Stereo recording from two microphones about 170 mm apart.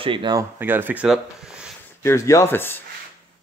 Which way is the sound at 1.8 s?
15° left (ahead or behind).